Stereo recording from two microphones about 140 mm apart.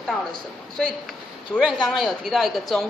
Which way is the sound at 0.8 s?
5° left (ahead or behind).